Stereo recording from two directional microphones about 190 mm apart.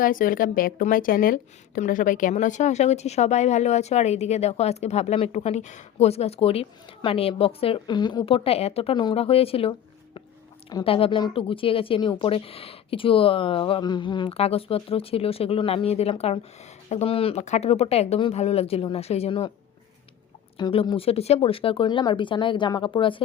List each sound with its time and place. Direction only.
0.0 s speech: 45° left (ahead or behind); by 19.5 s 30° left (ahead or behind)
20.6 s speech: 25° left (ahead or behind)